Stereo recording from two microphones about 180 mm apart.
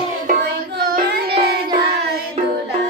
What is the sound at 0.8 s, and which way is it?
Singing, 55° right (ahead or behind).